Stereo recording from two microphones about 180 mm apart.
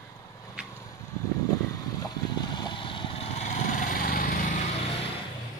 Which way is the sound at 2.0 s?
25° left (ahead or behind).